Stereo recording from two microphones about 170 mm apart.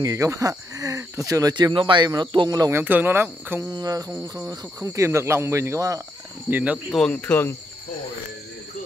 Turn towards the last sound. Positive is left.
turn(degrees=10)  # may be behind; listen again after turning